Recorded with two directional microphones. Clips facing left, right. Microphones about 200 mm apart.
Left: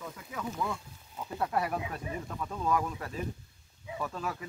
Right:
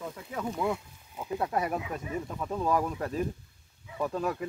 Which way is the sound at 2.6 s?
35° right (ahead or behind).